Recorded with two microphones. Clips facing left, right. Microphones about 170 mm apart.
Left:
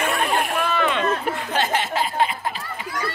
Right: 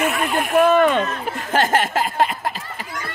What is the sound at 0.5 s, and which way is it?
Speech, 50° right (ahead or behind).